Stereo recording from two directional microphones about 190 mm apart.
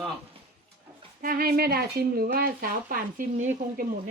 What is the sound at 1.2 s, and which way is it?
Speech, 50° right (ahead or behind).